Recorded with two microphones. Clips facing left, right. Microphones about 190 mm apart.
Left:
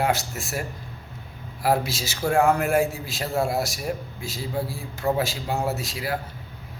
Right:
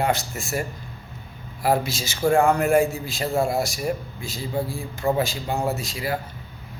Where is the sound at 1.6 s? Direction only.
Centre (ahead or behind).